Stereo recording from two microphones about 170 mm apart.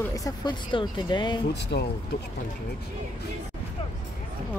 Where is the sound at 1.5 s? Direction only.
80° left.